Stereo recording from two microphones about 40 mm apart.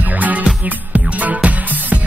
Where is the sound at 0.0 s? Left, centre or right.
Right.